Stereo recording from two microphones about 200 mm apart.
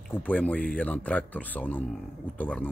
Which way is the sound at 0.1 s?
5° left (ahead or behind).